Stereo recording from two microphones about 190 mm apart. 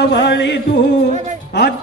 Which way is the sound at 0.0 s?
65° left (ahead or behind).